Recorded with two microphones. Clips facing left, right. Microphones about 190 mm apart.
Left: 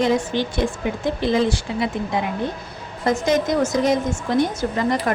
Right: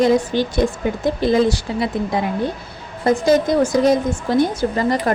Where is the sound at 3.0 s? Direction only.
35° right (ahead or behind).